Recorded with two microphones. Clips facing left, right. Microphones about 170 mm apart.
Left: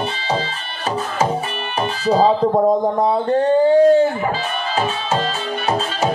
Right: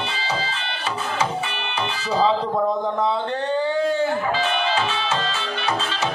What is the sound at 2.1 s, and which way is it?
Speech, 45° left (ahead or behind).